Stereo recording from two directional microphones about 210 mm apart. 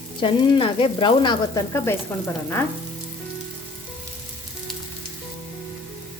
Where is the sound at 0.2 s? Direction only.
25° left (ahead or behind).